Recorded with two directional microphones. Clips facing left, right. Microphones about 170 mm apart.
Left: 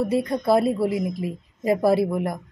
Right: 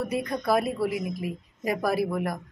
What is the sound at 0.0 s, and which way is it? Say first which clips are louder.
A woman's voice: left 6 dB; 25° left (ahead or behind).